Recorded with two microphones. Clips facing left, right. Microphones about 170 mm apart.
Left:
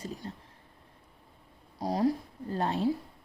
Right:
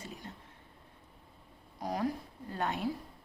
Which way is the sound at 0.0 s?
35° left (ahead or behind).